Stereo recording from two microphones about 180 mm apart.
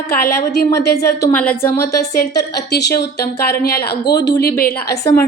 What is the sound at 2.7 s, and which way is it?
Speech, 70° left (ahead or behind).